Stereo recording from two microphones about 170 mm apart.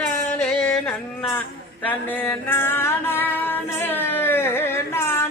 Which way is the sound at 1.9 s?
10° left (ahead or behind).